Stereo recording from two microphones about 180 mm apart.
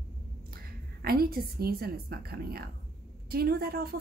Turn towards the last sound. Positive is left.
turn(degrees=-60)  # may be behind; listen again after turning